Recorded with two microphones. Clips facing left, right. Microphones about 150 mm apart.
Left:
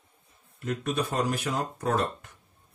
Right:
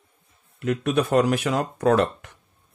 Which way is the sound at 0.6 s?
75° right (ahead or behind).